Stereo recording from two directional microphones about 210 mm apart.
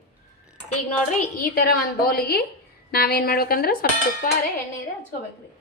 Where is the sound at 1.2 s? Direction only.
45° left (ahead or behind).